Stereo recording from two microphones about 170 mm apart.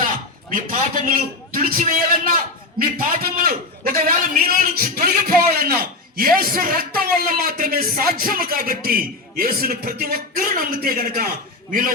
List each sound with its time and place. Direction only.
0.5 s a man's voice: 55° right (ahead or behind)